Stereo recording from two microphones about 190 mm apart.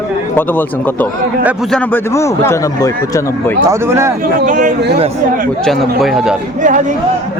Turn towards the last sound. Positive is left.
turn(degrees=-40)  # may be behind; listen again after turning